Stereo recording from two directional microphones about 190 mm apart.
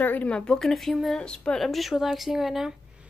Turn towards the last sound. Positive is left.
turn(degrees=0)  # may be behind; listen again after turning